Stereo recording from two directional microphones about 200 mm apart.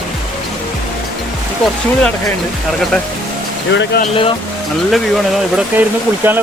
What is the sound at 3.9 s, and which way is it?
Speech, 50° left (ahead or behind).